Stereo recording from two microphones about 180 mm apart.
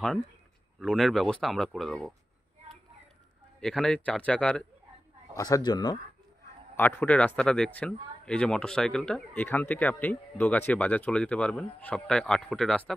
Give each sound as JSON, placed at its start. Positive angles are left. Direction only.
{"t": 0.7, "sound": "speech", "side_deg": 0}
{"t": 3.6, "sound": "speech", "side_deg": 5}
{"t": 5.3, "sound": "a man's voice", "side_deg": 20}
{"t": 6.8, "sound": "speech", "side_deg": 10}